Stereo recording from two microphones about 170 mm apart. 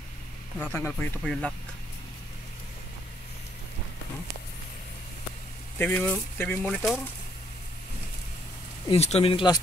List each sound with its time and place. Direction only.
0.7 s speech: 10° left (ahead or behind)
5.8 s speech: 10° left (ahead or behind)
8.8 s speech: 35° left (ahead or behind)